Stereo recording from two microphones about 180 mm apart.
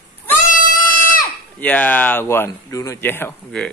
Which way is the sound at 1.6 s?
10° left (ahead or behind).